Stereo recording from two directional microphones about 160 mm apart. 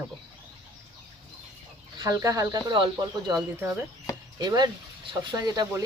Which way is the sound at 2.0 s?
20° right (ahead or behind).